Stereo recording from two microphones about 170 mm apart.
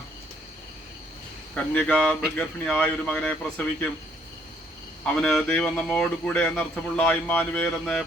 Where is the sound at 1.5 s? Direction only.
5° left (ahead or behind).